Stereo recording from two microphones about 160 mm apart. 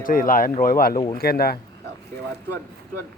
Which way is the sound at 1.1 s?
75° left (ahead or behind).